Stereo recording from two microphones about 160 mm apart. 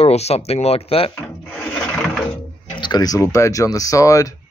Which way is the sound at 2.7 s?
25° left (ahead or behind).